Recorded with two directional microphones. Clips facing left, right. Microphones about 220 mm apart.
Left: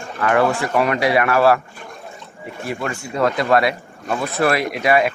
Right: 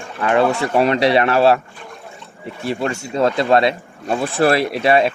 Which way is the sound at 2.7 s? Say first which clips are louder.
Right 4 dB; 30° right (ahead or behind).